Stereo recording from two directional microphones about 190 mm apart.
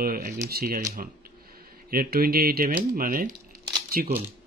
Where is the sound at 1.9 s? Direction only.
50° right (ahead or behind).